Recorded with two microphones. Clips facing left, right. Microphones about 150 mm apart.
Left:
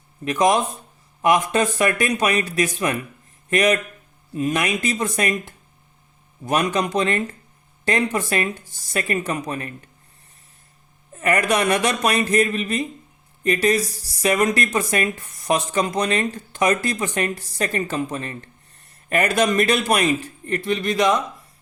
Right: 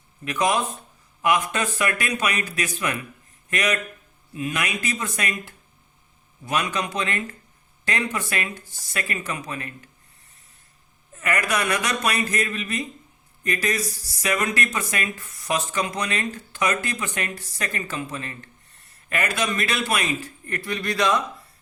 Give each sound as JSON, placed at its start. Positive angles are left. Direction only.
{"t": 0.3, "sound": "speech", "side_deg": 30}
{"t": 6.4, "sound": "speech", "side_deg": 35}
{"t": 11.1, "sound": "speech", "side_deg": 30}